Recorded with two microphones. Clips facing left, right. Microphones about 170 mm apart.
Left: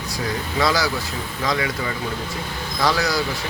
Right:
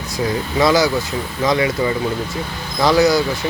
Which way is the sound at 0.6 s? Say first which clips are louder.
Right 7 dB; 20° right (ahead or behind).